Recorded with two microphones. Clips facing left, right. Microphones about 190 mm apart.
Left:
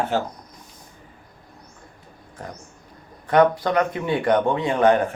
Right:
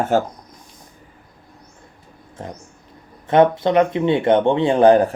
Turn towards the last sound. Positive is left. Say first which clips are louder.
# right 5 dB
turn(degrees=-35)  # may be behind; listen again after turning